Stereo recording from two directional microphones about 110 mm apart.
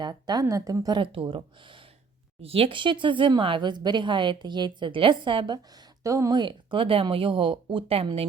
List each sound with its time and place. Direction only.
0.0 s a woman's voice: 40° right (ahead or behind)
1.0 s speech: 55° right (ahead or behind)
6.0 s speech: 30° right (ahead or behind); by 8.0 s 55° right (ahead or behind)